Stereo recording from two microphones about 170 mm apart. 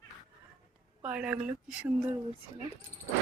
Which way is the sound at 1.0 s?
5° right (ahead or behind).